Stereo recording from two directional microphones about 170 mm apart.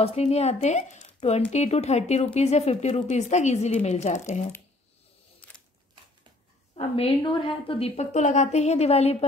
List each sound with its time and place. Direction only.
0.0 s a woman's voice: 40° left (ahead or behind)
6.7 s a woman's voice: 35° left (ahead or behind)